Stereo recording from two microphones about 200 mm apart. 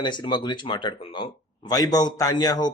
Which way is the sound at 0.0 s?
20° left (ahead or behind).